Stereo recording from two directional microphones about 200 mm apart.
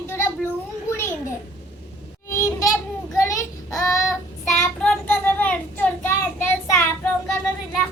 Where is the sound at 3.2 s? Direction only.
15° left (ahead or behind).